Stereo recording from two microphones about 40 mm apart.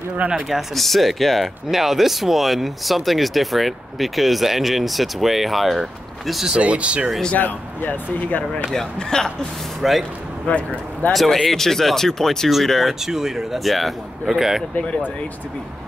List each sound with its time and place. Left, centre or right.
0.5 s speech: centre
6.6 s speech: right
7.3 s speech: left
8.7 s speech: centre
9.8 s speech: centre
10.5 s speech: left
11.1 s speech: centre
13.0 s speech: centre